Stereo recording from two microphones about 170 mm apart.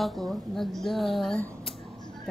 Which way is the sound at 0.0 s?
Centre (ahead or behind).